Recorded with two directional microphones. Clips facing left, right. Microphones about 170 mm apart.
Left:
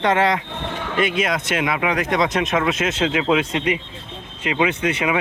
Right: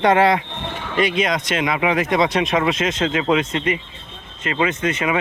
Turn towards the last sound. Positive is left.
turn(degrees=10)  # may be behind; listen again after turning